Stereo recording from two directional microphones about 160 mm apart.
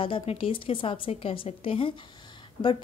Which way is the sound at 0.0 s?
35° left (ahead or behind).